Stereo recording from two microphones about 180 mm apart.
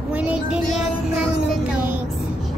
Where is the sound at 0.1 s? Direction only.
5° right (ahead or behind).